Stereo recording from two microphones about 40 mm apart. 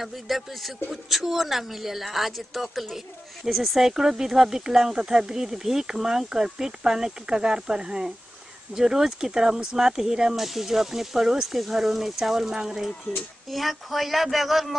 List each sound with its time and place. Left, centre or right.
0.0 s a woman's voice: centre
3.8 s speech: centre
13.5 s a woman's voice: centre